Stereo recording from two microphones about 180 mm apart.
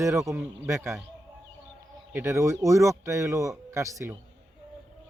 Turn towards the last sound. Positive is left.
turn(degrees=-15)  # may be behind; listen again after turning